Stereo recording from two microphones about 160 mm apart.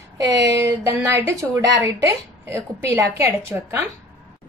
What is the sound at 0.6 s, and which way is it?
A woman's voice, 20° right (ahead or behind).